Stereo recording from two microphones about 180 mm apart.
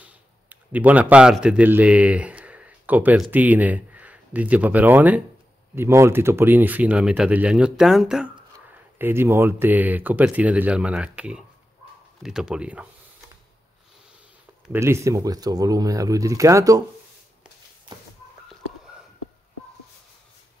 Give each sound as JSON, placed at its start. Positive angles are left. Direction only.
{"t": 0.0, "sound": "speech", "side_deg": -10}
{"t": 14.7, "sound": "speech", "side_deg": -15}
{"t": 18.5, "sound": "a sound", "side_deg": -5}